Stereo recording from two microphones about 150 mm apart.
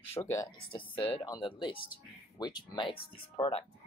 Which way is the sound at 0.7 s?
35° left (ahead or behind).